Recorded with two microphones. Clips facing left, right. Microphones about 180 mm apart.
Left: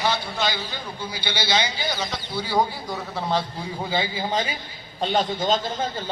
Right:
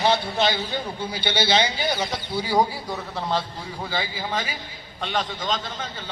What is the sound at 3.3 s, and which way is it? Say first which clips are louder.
A man's voice: left 2 dB; 15° left (ahead or behind).